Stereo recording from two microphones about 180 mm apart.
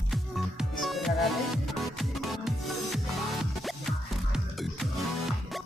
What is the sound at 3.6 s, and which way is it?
Music, centre (ahead or behind).